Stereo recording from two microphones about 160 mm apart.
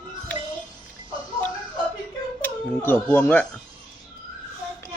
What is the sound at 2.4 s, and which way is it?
Speech, 10° left (ahead or behind).